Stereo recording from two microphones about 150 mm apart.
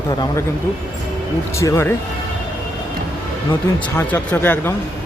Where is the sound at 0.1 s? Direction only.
25° left (ahead or behind).